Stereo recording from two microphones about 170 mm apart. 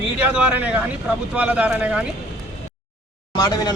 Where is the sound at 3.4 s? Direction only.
20° left (ahead or behind).